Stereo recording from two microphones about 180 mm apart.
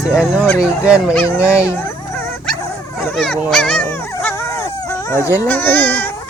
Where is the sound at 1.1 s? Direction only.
15° left (ahead or behind).